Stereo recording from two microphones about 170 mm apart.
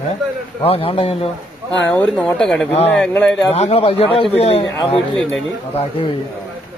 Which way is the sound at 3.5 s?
35° left (ahead or behind).